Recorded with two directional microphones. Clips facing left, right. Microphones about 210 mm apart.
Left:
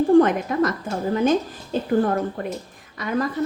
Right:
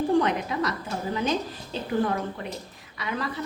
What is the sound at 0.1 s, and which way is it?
A woman's voice, 50° left (ahead or behind).